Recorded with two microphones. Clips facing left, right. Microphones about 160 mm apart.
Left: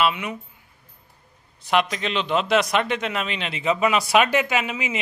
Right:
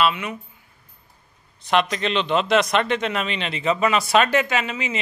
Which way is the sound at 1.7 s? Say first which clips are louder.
Right 1 dB; 5° left (ahead or behind).